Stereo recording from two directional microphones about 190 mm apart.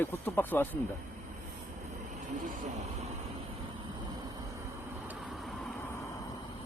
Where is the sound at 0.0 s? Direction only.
10° left (ahead or behind).